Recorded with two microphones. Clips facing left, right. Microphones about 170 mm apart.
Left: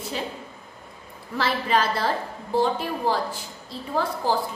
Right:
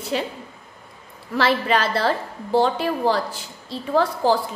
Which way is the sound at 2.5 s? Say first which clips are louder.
Right 4 dB; 90° right.